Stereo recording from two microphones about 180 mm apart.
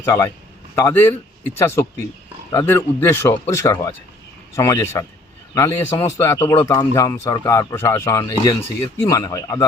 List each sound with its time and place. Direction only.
0.0 s speech: 15° left (ahead or behind)